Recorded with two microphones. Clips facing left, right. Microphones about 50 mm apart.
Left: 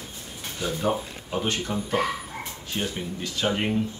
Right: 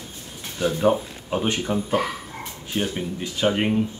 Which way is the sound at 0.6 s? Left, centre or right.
Centre.